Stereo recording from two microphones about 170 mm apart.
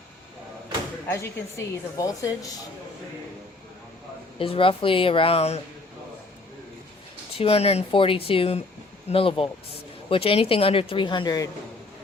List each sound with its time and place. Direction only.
1.0 s a woman's voice: 15° left (ahead or behind)
4.4 s speech: 30° left (ahead or behind)
7.3 s speech: 35° left (ahead or behind)